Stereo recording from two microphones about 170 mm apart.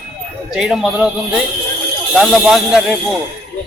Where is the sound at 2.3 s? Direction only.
Centre (ahead or behind).